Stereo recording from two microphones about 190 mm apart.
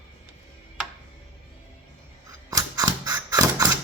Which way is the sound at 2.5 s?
20° right (ahead or behind).